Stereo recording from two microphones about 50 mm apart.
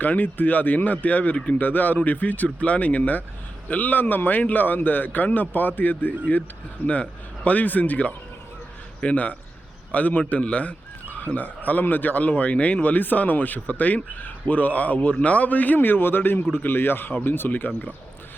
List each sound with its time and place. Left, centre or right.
0.0 s a man's voice: left